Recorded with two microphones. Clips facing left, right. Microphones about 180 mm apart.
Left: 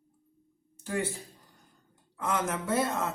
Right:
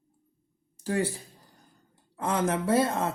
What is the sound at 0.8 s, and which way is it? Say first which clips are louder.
Speech: right 4 dB; 35° right (ahead or behind).